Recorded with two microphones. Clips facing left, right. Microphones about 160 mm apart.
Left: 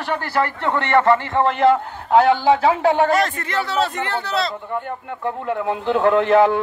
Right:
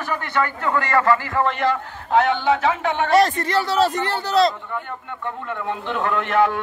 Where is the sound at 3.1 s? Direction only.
35° right (ahead or behind).